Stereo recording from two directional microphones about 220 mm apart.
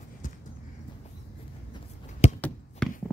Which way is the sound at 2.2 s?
30° left (ahead or behind).